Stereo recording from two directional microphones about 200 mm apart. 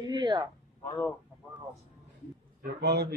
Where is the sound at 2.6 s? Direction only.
55° right (ahead or behind).